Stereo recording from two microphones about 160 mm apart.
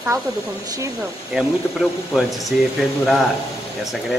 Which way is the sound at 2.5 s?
5° right (ahead or behind).